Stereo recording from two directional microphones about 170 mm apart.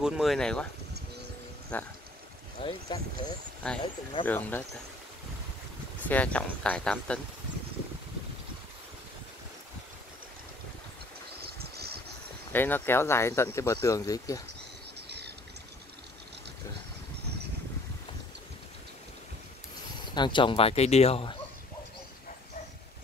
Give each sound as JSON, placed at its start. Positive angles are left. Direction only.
{"t": 0.0, "sound": "speech", "side_deg": 0}
{"t": 1.7, "sound": "speech", "side_deg": 10}
{"t": 2.6, "sound": "speech", "side_deg": 25}
{"t": 3.6, "sound": "speech", "side_deg": 5}
{"t": 6.0, "sound": "speech", "side_deg": 10}
{"t": 11.4, "sound": "a sound", "side_deg": -65}
{"t": 12.5, "sound": "speech", "side_deg": 10}
{"t": 15.0, "sound": "a sound", "side_deg": -75}
{"t": 20.2, "sound": "speech", "side_deg": 30}